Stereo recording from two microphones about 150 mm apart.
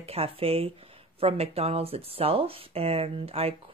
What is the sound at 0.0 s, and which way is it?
Speech, 40° right (ahead or behind).